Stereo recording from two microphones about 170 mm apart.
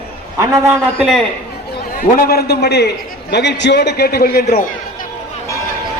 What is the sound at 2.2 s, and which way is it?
A man's voice, 65° left (ahead or behind).